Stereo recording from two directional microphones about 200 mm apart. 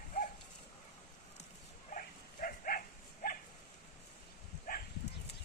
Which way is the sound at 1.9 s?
40° left (ahead or behind).